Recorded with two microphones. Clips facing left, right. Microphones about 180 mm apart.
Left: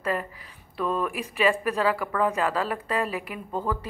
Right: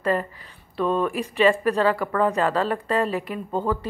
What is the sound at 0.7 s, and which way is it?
Speech, 30° right (ahead or behind).